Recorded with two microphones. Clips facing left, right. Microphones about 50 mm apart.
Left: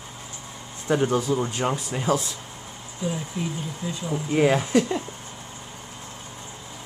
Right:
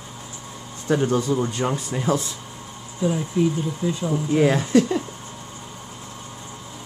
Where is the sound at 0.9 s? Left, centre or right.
Centre.